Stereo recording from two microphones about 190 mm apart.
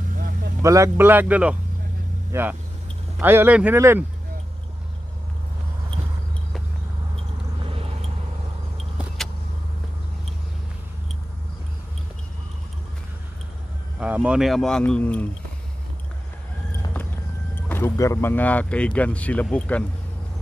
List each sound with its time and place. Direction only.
0.6 s a man's voice: 15° right (ahead or behind)
7.7 s vehicle: 30° right (ahead or behind)
8.7 s vehicle: centre (ahead or behind)
13.9 s speech: 5° right (ahead or behind)
17.6 s speech: 15° left (ahead or behind)